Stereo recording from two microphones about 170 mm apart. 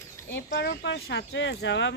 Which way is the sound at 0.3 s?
85° left.